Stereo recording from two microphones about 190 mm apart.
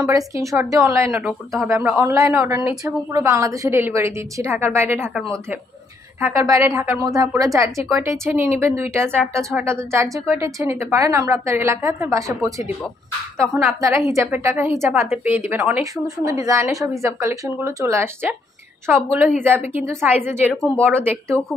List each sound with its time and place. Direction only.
0.1 s a woman's voice: 15° right (ahead or behind)
1.1 s speech: centre (ahead or behind)
1.7 s a woman's voice: 10° right (ahead or behind)